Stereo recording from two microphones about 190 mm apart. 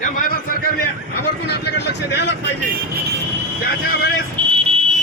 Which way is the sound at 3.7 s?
55° left (ahead or behind).